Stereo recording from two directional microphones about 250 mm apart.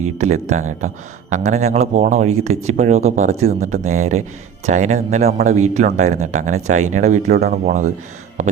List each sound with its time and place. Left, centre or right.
0.2 s speech: right